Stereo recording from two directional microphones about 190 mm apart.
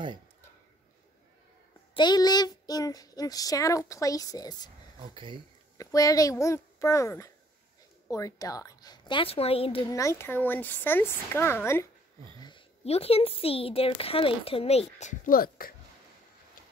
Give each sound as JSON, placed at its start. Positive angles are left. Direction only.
{"t": 2.0, "sound": "speech", "side_deg": 20}
{"t": 4.9, "sound": "speech", "side_deg": -25}
{"t": 5.8, "sound": "speech", "side_deg": 15}
{"t": 9.9, "sound": "speech", "side_deg": 15}
{"t": 12.4, "sound": "a woman's voice", "side_deg": 25}